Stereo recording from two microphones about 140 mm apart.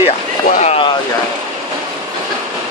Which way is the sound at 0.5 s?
55° left (ahead or behind).